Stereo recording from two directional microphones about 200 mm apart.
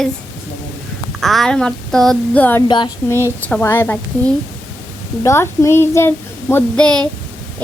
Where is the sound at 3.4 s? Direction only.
10° left (ahead or behind).